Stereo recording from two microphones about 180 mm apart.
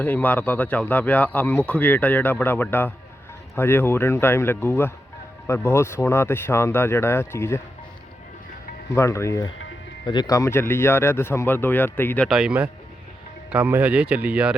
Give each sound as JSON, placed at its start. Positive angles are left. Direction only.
{"t": 0.0, "sound": "speech", "side_deg": 10}
{"t": 8.9, "sound": "speech", "side_deg": 15}